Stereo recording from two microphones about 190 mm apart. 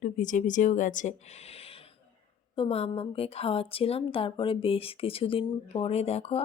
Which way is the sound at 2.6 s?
30° left (ahead or behind).